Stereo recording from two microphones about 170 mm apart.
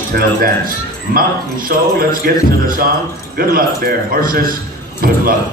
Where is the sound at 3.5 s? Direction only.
60° right (ahead or behind).